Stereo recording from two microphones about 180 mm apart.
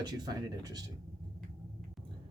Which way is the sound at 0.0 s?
20° right (ahead or behind).